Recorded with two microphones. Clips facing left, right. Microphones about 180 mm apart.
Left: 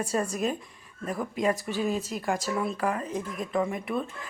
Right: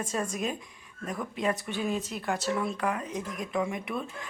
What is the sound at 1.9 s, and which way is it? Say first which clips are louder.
Speech: even; 5° left (ahead or behind).